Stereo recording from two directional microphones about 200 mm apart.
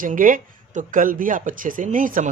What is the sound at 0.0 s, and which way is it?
Speech, 45° right (ahead or behind).